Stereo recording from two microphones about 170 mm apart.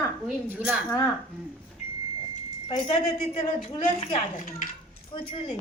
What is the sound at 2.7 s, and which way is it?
Speech, 35° left (ahead or behind).